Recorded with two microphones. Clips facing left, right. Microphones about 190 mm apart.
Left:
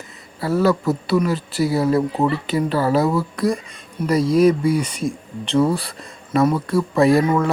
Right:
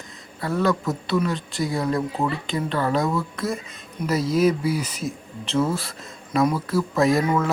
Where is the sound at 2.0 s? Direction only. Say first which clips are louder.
Left 5 dB; 30° left (ahead or behind).